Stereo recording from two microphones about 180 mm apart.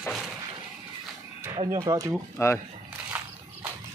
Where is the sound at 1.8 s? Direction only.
20° right (ahead or behind).